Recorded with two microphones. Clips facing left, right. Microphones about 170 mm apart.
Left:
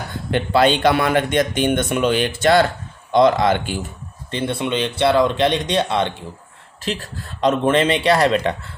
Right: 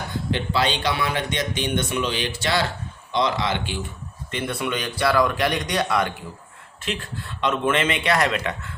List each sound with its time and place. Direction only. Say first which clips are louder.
0.3 s a man's voice: left 8 dB; 55° left (ahead or behind)
4.3 s speech: left 5 dB; 30° left (ahead or behind)
6.8 s speech: left 3 dB; 35° left (ahead or behind)